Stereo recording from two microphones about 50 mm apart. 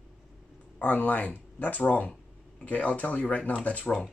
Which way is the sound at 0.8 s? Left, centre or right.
Left.